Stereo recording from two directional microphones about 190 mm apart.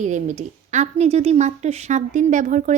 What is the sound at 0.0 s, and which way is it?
A woman's voice, 40° right (ahead or behind).